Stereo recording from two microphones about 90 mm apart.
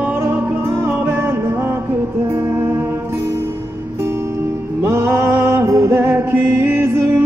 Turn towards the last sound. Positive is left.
turn(degrees=-25)  # may be behind; listen again after turning